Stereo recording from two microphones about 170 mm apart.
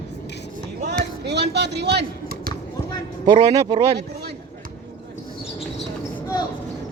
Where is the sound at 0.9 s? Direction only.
80° right.